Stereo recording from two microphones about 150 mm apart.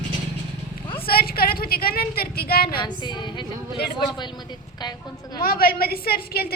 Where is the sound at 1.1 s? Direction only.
90° left.